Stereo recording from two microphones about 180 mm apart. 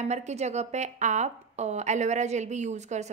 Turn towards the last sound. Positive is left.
turn(degrees=-40)  # may be behind; listen again after turning